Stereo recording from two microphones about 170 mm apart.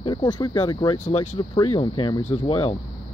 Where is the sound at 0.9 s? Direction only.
45° left (ahead or behind).